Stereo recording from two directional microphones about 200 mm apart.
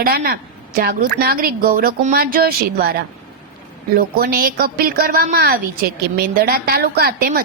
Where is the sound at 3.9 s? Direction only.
45° right (ahead or behind).